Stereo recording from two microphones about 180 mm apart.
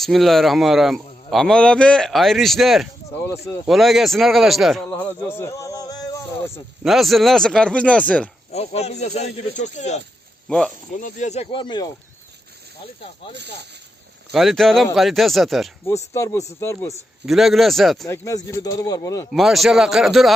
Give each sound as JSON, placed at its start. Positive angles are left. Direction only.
{"t": 0.0, "sound": "a man's voice", "side_deg": 0}
{"t": 6.8, "sound": "a man's voice", "side_deg": 0}
{"t": 8.5, "sound": "speech", "side_deg": 35}
{"t": 11.0, "sound": "speech", "side_deg": 40}
{"t": 14.3, "sound": "a man's voice", "side_deg": 0}
{"t": 15.9, "sound": "speech", "side_deg": 15}
{"t": 17.2, "sound": "a man's voice", "side_deg": 0}
{"t": 18.1, "sound": "speech", "side_deg": 15}
{"t": 19.3, "sound": "a man's voice", "side_deg": 0}